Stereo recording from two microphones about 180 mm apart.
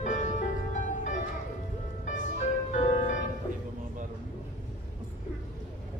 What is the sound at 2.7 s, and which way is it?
Music, 40° left (ahead or behind).